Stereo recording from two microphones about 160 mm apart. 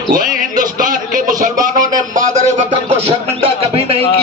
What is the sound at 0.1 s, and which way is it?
Music, 60° right (ahead or behind).